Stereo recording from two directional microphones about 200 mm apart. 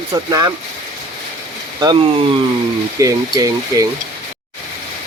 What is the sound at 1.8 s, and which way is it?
Speech, 20° right (ahead or behind).